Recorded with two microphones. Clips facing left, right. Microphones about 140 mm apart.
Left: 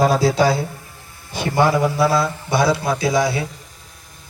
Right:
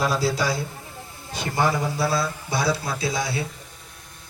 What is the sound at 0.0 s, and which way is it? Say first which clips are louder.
A man's voice: left 8 dB; 70° left (ahead or behind).